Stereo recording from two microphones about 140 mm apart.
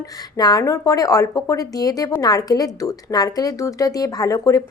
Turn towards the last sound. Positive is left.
turn(degrees=25)  # may be behind; listen again after turning